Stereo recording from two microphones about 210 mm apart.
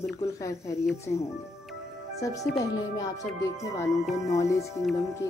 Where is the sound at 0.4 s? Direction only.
15° left (ahead or behind).